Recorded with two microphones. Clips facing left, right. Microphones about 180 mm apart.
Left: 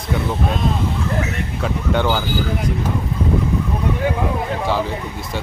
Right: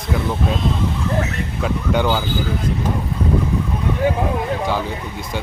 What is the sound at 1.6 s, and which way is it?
Speech, centre (ahead or behind).